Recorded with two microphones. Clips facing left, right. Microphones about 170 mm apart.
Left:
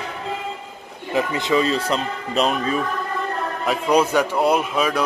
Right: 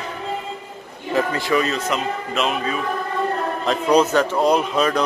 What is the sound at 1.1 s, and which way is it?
Speech, 15° left (ahead or behind).